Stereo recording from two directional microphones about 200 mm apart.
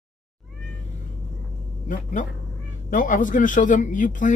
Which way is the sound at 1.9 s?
40° left (ahead or behind).